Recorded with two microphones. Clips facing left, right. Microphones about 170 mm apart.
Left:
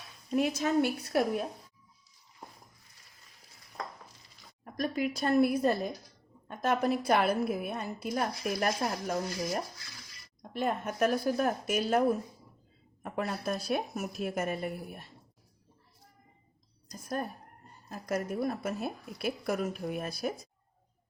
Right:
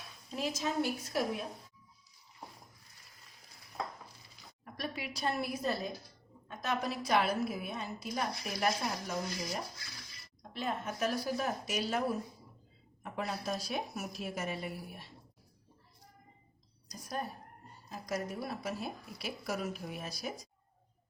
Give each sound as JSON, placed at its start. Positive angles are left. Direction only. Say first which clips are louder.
{"t": 0.3, "sound": "a woman's voice", "louder": "left 7 dB", "side_deg": 60}
{"t": 4.6, "sound": "a woman's voice", "louder": "left 9 dB", "side_deg": 45}
{"t": 10.5, "sound": "a woman's voice", "louder": "left 5 dB", "side_deg": 50}
{"t": 16.9, "sound": "a woman's voice", "louder": "left 4 dB", "side_deg": 50}